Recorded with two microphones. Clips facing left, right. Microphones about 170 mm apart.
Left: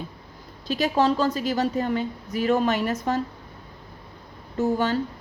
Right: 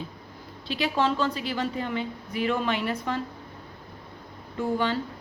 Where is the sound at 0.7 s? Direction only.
40° left (ahead or behind).